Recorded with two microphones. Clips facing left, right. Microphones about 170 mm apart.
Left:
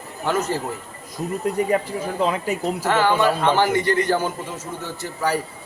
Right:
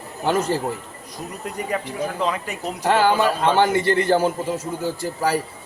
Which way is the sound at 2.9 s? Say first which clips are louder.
Right 1 dB; 30° right (ahead or behind).